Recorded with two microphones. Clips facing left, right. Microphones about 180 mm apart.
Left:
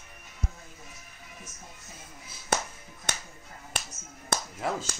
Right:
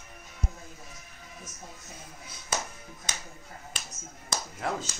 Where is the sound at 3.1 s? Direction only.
65° left (ahead or behind).